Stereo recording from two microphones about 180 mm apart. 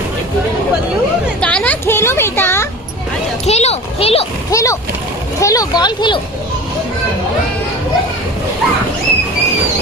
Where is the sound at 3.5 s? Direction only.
35° left (ahead or behind).